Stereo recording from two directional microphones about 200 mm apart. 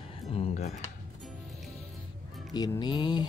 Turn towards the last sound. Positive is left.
turn(degrees=20)  # may be behind; listen again after turning